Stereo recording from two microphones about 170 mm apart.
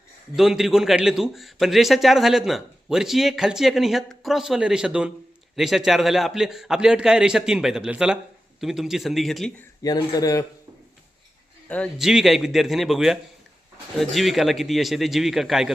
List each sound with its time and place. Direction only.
0.3 s a man's voice: centre (ahead or behind)
9.8 s speech: 20° left (ahead or behind)
11.7 s a man's voice: centre (ahead or behind)